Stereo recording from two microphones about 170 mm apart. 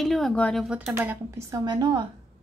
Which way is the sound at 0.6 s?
5° right (ahead or behind).